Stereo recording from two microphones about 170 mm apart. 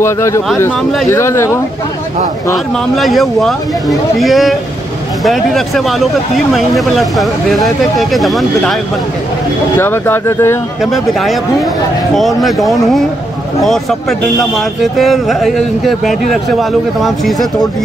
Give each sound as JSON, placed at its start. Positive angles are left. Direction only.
{"t": 0.0, "sound": "speech", "side_deg": 15}
{"t": 2.5, "sound": "speech", "side_deg": 0}
{"t": 9.8, "sound": "speech", "side_deg": 15}
{"t": 10.8, "sound": "speech", "side_deg": 0}